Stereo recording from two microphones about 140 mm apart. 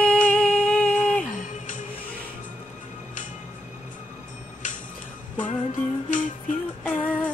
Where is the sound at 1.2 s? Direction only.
65° left (ahead or behind).